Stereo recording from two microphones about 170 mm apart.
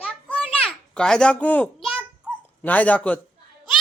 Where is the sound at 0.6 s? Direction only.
5° left (ahead or behind).